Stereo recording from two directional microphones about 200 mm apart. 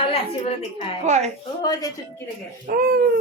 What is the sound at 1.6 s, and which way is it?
Speech, 20° left (ahead or behind).